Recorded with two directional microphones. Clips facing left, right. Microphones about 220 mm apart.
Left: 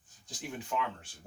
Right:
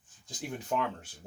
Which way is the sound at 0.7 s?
45° right (ahead or behind).